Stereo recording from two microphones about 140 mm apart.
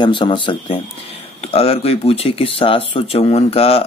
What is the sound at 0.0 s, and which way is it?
Speech, 35° left (ahead or behind).